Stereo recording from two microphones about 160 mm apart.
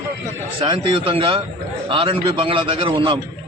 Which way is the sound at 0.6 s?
30° right (ahead or behind).